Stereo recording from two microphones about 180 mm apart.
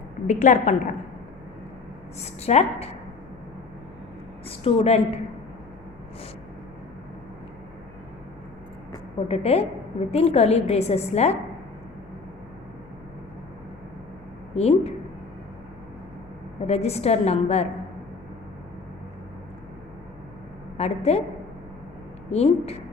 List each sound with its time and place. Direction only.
0.3 s a woman's voice: 45° left (ahead or behind)
2.2 s a woman's voice: 35° left (ahead or behind)
4.4 s a woman's voice: 35° left (ahead or behind)
9.3 s a woman's voice: 35° left (ahead or behind)
14.5 s a woman's voice: 35° left (ahead or behind)
16.6 s a woman's voice: 35° left (ahead or behind)
20.7 s a woman's voice: 35° left (ahead or behind)
22.3 s a woman's voice: 35° left (ahead or behind)